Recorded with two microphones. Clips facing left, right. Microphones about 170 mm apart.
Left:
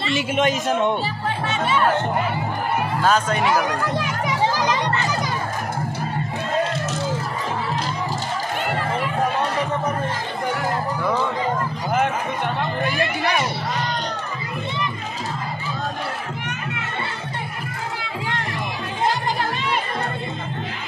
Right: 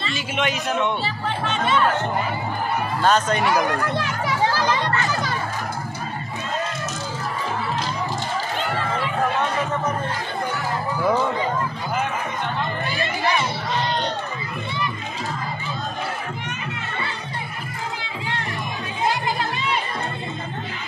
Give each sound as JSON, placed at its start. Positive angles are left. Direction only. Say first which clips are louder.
{"t": 0.4, "sound": "a man's voice", "louder": "left 2 dB", "side_deg": 40}
{"t": 1.4, "sound": "speech", "louder": "even", "side_deg": 10}
{"t": 3.0, "sound": "a sound", "louder": "right 1 dB", "side_deg": 5}
{"t": 12.8, "sound": "crowd", "louder": "left 2 dB", "side_deg": 60}